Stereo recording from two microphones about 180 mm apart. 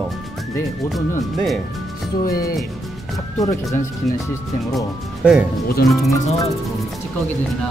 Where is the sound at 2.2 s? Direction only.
55° left (ahead or behind).